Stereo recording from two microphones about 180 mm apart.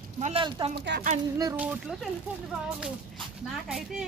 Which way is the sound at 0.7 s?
65° right (ahead or behind).